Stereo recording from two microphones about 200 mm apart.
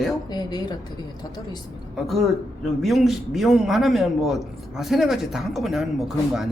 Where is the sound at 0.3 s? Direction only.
20° left (ahead or behind).